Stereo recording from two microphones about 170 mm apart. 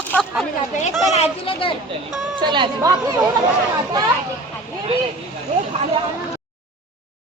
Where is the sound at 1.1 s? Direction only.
35° left (ahead or behind).